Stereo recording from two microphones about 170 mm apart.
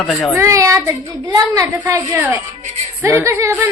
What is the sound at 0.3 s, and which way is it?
Speech, 20° right (ahead or behind).